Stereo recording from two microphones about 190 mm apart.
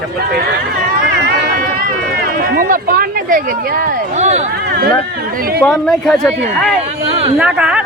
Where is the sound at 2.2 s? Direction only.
50° right (ahead or behind).